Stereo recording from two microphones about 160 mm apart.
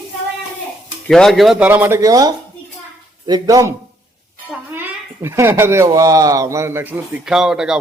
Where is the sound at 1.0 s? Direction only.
5° left (ahead or behind).